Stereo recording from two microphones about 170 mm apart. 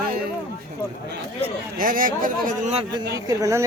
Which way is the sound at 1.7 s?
55° right (ahead or behind).